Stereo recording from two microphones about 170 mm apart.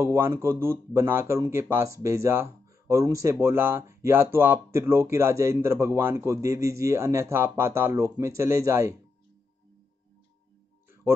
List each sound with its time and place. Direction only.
0.0 s speech: 15° right (ahead or behind)